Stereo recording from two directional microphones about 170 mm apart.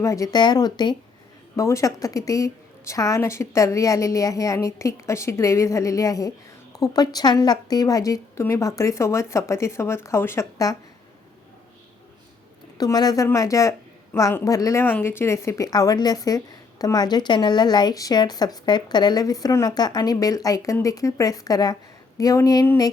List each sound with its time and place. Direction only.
0.0 s a woman's voice: 20° left (ahead or behind)
12.7 s a woman's voice: 20° left (ahead or behind)